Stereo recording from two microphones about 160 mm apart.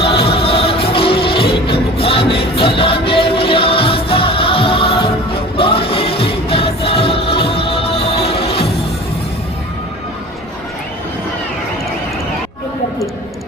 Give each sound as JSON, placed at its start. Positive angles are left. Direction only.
{"t": 0.0, "sound": "music", "side_deg": 35}